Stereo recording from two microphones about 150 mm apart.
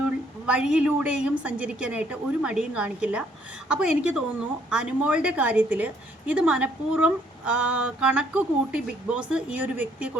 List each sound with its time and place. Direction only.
0.4 s a woman's voice: 5° right (ahead or behind)